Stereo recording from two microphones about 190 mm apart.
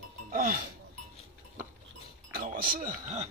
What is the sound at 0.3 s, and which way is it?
Speech, 45° right (ahead or behind).